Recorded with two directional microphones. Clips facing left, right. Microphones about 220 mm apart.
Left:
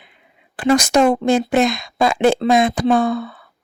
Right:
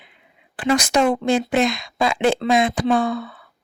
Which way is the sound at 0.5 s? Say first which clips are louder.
Left 4 dB; 40° left (ahead or behind).